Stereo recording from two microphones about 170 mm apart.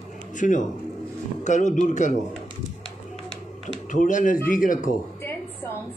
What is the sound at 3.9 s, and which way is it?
A man's voice, 50° left (ahead or behind).